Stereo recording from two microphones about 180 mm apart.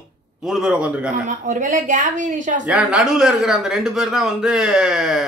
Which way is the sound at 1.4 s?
45° right (ahead or behind).